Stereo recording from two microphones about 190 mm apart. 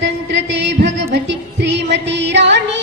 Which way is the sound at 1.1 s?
65° right (ahead or behind).